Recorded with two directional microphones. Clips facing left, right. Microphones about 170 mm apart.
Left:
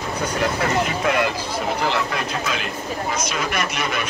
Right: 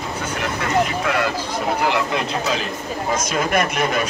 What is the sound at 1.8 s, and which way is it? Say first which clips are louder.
Speech: right 4 dB; 20° right (ahead or behind).